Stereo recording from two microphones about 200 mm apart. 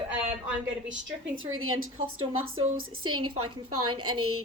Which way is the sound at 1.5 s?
90° right.